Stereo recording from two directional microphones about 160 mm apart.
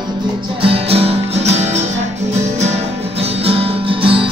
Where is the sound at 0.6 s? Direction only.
35° right (ahead or behind).